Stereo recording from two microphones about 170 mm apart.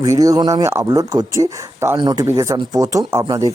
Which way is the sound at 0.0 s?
20° right (ahead or behind).